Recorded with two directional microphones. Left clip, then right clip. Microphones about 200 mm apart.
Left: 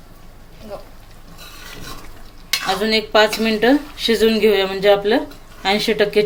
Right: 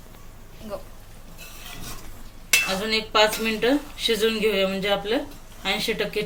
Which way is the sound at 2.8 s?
45° left (ahead or behind).